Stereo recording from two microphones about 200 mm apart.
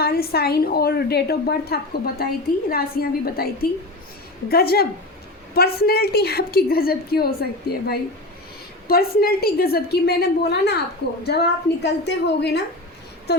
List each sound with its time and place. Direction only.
0.0 s a woman's voice: 50° left (ahead or behind)